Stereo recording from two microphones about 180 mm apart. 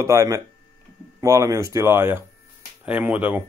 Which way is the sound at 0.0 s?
15° right (ahead or behind).